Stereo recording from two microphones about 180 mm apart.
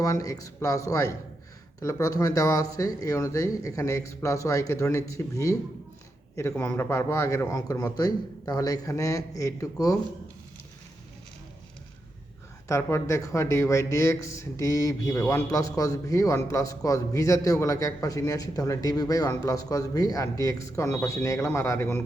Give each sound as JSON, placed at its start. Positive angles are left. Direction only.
{"t": 0.0, "sound": "a man's voice", "side_deg": 20}
{"t": 6.6, "sound": "speech", "side_deg": 15}
{"t": 12.6, "sound": "a man's voice", "side_deg": 15}